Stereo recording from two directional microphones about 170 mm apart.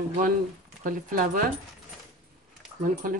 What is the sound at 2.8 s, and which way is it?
Speech, 55° right (ahead or behind).